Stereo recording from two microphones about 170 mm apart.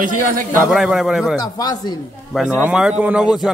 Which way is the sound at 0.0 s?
55° right (ahead or behind).